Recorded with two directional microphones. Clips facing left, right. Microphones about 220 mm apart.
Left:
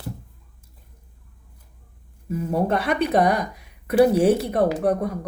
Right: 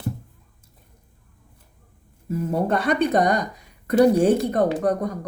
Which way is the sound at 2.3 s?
Centre (ahead or behind).